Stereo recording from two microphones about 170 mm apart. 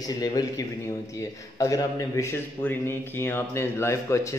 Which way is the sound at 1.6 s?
20° left (ahead or behind).